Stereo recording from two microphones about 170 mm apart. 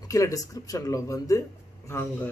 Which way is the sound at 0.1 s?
20° left (ahead or behind).